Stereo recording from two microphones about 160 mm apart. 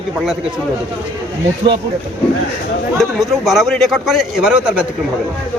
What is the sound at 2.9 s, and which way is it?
A man's voice, centre (ahead or behind).